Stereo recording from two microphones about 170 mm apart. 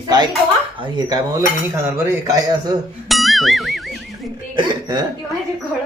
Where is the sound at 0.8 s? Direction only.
25° right (ahead or behind).